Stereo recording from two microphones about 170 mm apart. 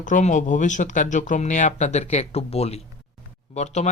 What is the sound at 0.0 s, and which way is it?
Speech, 45° left (ahead or behind).